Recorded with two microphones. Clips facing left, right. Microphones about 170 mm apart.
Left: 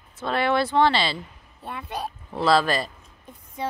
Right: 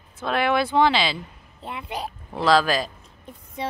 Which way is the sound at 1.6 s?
20° right (ahead or behind).